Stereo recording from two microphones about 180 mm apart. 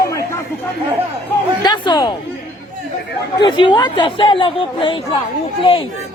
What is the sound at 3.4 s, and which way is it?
Speech, 25° left (ahead or behind).